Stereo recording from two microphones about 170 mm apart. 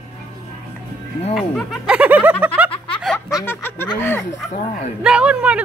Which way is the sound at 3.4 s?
10° left (ahead or behind).